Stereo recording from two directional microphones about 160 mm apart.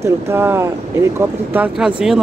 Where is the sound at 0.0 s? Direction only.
15° right (ahead or behind).